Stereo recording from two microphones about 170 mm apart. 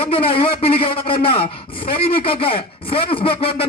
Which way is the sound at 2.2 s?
30° left (ahead or behind).